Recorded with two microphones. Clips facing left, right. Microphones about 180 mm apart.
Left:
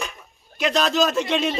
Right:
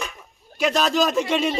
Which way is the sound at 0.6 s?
10° right (ahead or behind).